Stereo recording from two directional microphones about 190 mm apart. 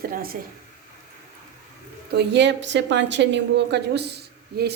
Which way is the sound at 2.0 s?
65° right (ahead or behind).